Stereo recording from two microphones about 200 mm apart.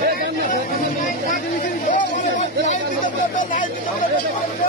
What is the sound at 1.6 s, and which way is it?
Hubbub, 40° left (ahead or behind).